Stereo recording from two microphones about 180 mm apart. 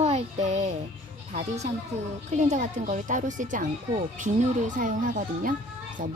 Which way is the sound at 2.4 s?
45° right (ahead or behind).